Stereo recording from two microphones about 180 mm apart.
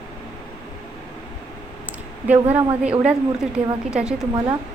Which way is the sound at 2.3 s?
10° right (ahead or behind).